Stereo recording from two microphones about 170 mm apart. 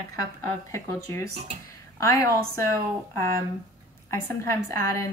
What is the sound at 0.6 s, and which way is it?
A woman's voice, 15° left (ahead or behind).